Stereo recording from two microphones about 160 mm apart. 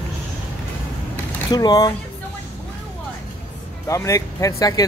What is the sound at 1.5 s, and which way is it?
Speech, 25° left (ahead or behind).